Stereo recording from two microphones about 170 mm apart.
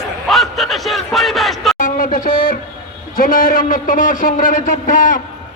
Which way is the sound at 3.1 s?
55° left (ahead or behind).